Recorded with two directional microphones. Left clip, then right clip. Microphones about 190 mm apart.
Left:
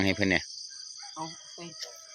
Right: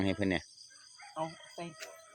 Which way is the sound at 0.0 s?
15° left (ahead or behind).